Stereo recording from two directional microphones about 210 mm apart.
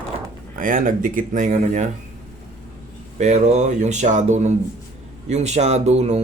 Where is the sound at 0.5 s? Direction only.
40° right (ahead or behind).